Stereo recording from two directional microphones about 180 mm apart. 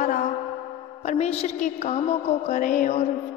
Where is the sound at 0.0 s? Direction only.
45° left (ahead or behind).